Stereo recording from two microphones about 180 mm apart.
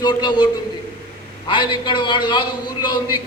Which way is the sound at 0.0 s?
25° left (ahead or behind).